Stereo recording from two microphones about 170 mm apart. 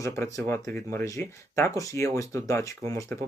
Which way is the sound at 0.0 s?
20° left (ahead or behind).